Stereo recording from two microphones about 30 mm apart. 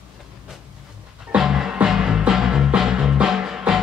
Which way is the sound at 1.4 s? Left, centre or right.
Centre.